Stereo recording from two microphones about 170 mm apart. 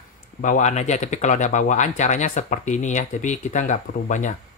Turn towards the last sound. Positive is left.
turn(degrees=45)  # may be behind; listen again after turning